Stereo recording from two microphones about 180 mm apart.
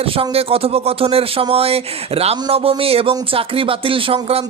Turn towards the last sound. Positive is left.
turn(degrees=-30)  # may be behind; listen again after turning